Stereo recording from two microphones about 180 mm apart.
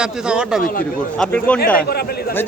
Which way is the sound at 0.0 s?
5° right (ahead or behind).